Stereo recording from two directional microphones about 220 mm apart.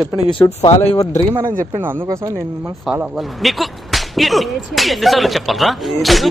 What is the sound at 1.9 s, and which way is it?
Speech, 15° right (ahead or behind).